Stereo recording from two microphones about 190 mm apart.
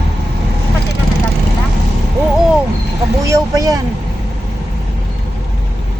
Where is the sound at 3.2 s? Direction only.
15° right (ahead or behind).